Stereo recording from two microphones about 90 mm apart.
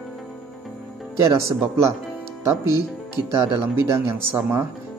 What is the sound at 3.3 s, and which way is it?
Speech, 35° right (ahead or behind).